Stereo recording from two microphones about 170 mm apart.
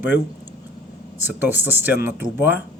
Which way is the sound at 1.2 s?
10° right (ahead or behind).